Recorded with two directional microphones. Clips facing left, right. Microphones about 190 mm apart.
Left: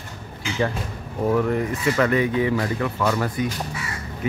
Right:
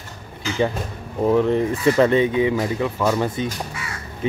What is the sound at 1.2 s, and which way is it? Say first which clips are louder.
Speech: right 4 dB; 20° right (ahead or behind).